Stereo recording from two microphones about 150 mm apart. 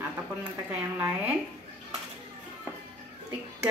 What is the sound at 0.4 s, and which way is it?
Speech, 10° right (ahead or behind).